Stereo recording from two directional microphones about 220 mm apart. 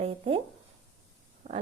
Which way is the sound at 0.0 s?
25° right (ahead or behind).